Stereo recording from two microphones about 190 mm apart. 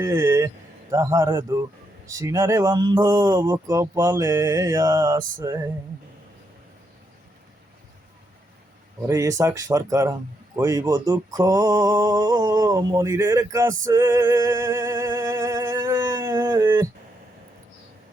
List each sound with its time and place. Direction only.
0.0 s speech: 15° right (ahead or behind)
9.0 s speech: 15° right (ahead or behind)